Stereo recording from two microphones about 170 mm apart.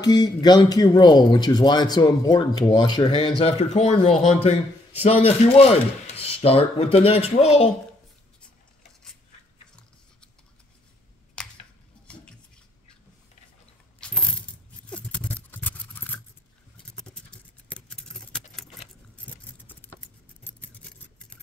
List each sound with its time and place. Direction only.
0.0 s speech: 25° left (ahead or behind)
11.4 s a sound: 5° left (ahead or behind)
13.9 s coin: 5° left (ahead or behind)
16.7 s patter: 5° left (ahead or behind)
19.3 s keys jangling: 10° left (ahead or behind)
20.4 s scissors: 10° left (ahead or behind)